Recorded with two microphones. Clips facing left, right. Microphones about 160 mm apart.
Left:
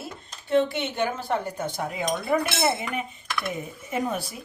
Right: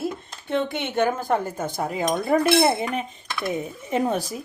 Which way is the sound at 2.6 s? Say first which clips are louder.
Right 4 dB; 35° right (ahead or behind).